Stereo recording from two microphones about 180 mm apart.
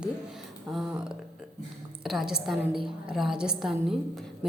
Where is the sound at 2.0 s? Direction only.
Centre (ahead or behind).